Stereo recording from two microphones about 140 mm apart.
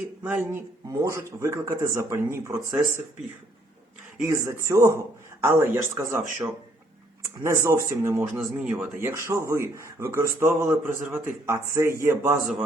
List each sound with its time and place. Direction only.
0.2 s a sound: 10° right (ahead or behind)
1.0 s a man's voice: 20° right (ahead or behind)
4.2 s a man's voice: 20° right (ahead or behind)
7.4 s a man's voice: 20° right (ahead or behind)
8.4 s speech: 5° right (ahead or behind)
9.0 s a man's voice: 20° right (ahead or behind)